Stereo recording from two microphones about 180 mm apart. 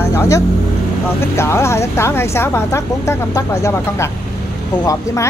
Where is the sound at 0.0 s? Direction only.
15° left (ahead or behind).